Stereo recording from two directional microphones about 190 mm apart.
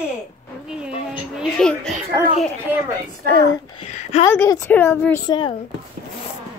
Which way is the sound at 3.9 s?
35° left (ahead or behind).